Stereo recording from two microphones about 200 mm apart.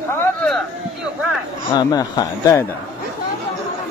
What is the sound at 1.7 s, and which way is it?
Speech, 20° left (ahead or behind).